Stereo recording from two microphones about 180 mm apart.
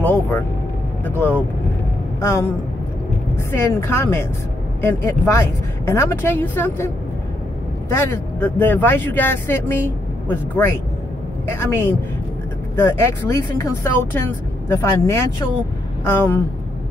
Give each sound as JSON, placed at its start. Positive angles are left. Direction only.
{"t": 0.0, "sound": "speech", "side_deg": 10}
{"t": 3.5, "sound": "speech", "side_deg": 15}
{"t": 7.9, "sound": "speech", "side_deg": 10}